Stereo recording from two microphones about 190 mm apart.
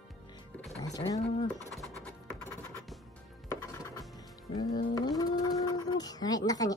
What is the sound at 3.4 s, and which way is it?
Music, 15° left (ahead or behind).